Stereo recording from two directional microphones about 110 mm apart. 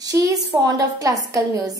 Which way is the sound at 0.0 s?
30° right (ahead or behind).